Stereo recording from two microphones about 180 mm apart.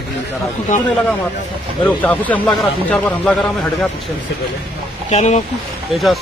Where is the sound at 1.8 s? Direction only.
10° left (ahead or behind).